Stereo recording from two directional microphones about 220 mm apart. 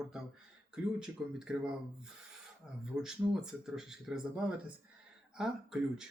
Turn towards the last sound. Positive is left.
turn(degrees=0)  # may be behind; listen again after turning